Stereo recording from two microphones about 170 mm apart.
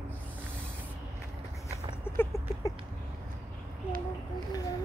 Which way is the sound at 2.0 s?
15° left (ahead or behind).